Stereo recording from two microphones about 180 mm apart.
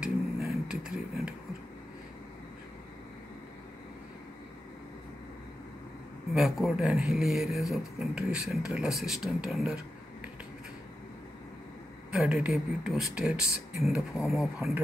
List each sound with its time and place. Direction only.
0.0 s vehicle: 5° right (ahead or behind)
6.3 s speech: centre (ahead or behind)
12.1 s speech: 5° right (ahead or behind)